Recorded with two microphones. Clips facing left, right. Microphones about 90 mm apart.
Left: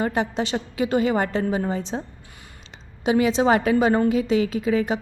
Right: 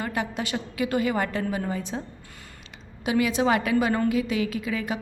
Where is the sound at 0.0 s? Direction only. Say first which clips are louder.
Left 6 dB; 30° left (ahead or behind).